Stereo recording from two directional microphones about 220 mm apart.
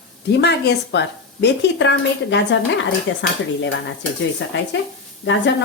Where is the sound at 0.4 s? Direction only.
50° left (ahead or behind).